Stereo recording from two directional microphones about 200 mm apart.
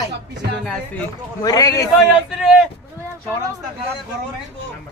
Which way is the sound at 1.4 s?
15° left (ahead or behind).